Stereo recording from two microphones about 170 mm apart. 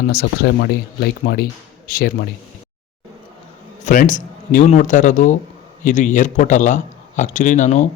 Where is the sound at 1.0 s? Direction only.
65° left (ahead or behind).